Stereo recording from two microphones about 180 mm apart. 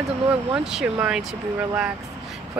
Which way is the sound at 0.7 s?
5° right (ahead or behind).